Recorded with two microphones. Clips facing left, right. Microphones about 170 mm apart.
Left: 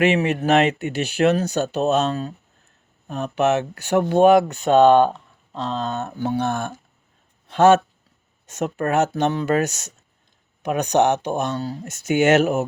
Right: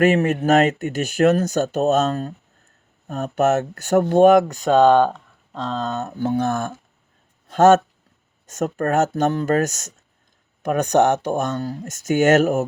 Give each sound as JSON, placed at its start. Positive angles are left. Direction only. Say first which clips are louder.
{"t": 0.0, "sound": "speech", "louder": "right 2 dB", "side_deg": -45}
{"t": 5.8, "sound": "speech", "louder": "right 1 dB", "side_deg": -40}
{"t": 7.4, "sound": "a sound", "louder": "right 1 dB", "side_deg": -45}
{"t": 8.4, "sound": "speech", "louder": "right 1 dB", "side_deg": -45}